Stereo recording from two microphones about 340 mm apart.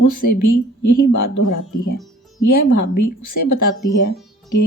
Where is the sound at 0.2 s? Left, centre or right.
Left.